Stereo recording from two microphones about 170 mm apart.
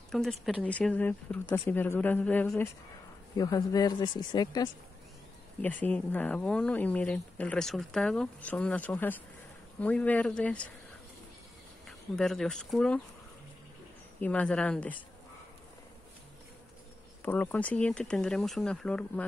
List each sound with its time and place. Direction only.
0.1 s speech: centre (ahead or behind)
3.3 s a man's voice: 20° left (ahead or behind)
5.6 s speech: 10° left (ahead or behind)
12.2 s speech: 5° left (ahead or behind)
14.2 s speech: 5° left (ahead or behind)
17.2 s speech: 10° left (ahead or behind)